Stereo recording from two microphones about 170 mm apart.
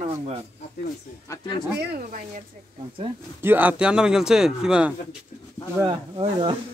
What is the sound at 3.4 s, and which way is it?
A man's voice, 10° right (ahead or behind).